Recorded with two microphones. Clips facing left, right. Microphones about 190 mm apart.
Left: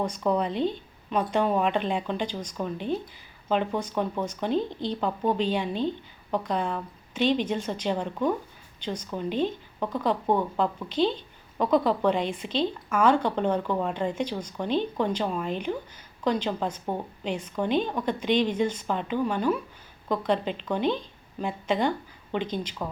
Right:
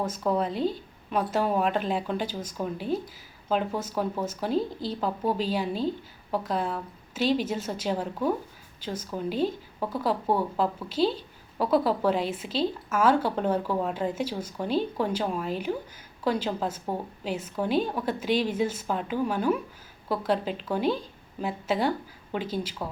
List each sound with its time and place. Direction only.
0.0 s a woman's voice: 5° right (ahead or behind)